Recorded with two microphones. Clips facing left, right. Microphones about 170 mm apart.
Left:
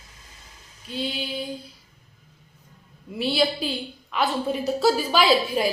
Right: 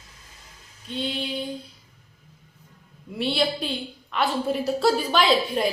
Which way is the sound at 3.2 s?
Centre (ahead or behind).